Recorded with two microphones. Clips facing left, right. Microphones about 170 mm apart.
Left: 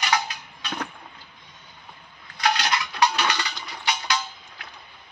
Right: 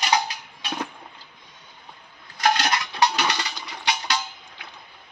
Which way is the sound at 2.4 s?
50° right (ahead or behind).